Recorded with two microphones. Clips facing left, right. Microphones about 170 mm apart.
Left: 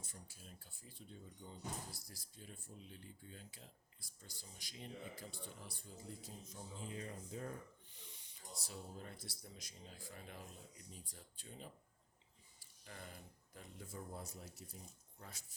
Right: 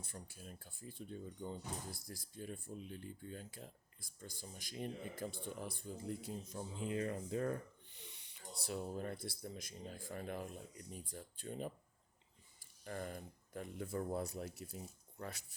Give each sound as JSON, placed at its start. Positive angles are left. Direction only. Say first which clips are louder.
{"t": 0.0, "sound": "speech", "louder": "right 6 dB", "side_deg": -60}